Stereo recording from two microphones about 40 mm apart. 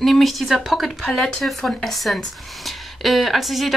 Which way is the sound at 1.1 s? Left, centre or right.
Left.